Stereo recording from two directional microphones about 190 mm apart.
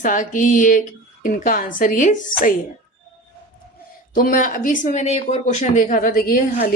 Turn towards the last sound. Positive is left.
turn(degrees=50)  # may be behind; listen again after turning